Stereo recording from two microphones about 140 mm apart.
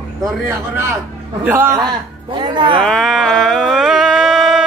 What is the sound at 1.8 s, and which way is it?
Speech, 30° right (ahead or behind).